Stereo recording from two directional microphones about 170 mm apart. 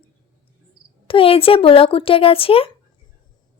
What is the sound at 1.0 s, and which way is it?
A woman's voice, 30° left (ahead or behind).